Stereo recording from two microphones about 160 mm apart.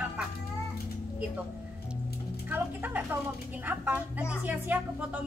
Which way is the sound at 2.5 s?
10° right (ahead or behind).